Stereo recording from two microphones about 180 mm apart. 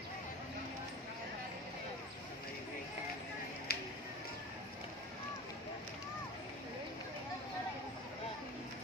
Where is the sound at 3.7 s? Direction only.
60° left (ahead or behind).